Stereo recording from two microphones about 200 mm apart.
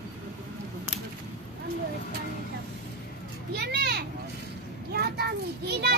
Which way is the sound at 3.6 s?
55° right (ahead or behind).